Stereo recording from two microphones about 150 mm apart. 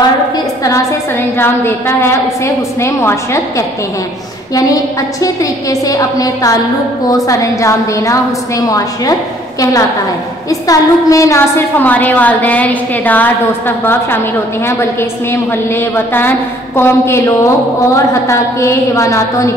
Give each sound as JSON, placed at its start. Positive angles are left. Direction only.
{"t": 1.4, "sound": "a woman's voice", "side_deg": 15}
{"t": 5.2, "sound": "a woman's voice", "side_deg": 20}